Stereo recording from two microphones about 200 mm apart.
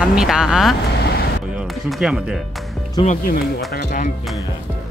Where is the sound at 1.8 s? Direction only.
Centre (ahead or behind).